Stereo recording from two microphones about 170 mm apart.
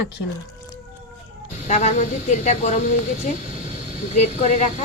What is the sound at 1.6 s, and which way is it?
Speech, 40° left (ahead or behind).